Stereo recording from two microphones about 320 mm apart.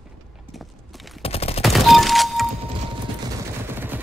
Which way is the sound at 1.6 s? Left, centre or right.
Centre.